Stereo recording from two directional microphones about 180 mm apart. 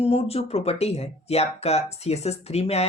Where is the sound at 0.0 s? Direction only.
35° left (ahead or behind).